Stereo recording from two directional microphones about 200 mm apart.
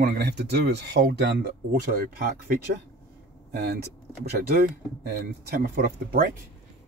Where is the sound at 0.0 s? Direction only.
55° right (ahead or behind).